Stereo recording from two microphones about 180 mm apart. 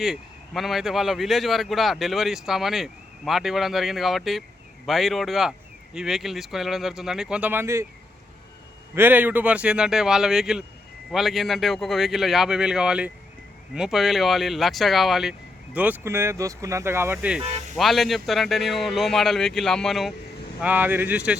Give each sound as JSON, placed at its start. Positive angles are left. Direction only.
{"t": 0.0, "sound": "a man's voice", "side_deg": 0}
{"t": 9.0, "sound": "a man's voice", "side_deg": -10}
{"t": 20.6, "sound": "speech", "side_deg": -10}